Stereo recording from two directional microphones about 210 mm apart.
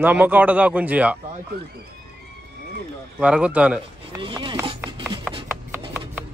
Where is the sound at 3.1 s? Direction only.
5° right (ahead or behind).